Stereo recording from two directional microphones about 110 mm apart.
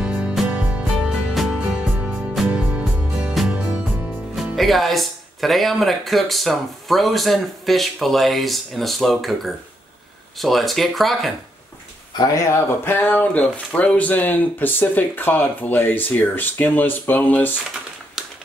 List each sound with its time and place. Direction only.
0.0 s music: 10° right (ahead or behind)
4.6 s speech: centre (ahead or behind)
12.2 s speech: 25° left (ahead or behind)
18.2 s a sound: 5° right (ahead or behind)